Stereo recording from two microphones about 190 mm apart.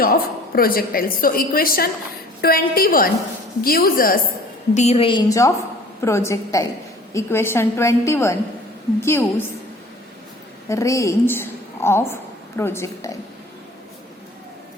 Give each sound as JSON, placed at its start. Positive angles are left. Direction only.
{"t": 0.0, "sound": "a woman's voice", "side_deg": 50}
{"t": 4.7, "sound": "a woman's voice", "side_deg": 35}
{"t": 10.7, "sound": "a woman's voice", "side_deg": 15}